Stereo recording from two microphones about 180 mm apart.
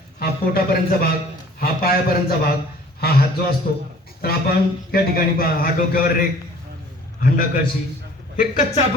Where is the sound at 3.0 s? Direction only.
60° left (ahead or behind).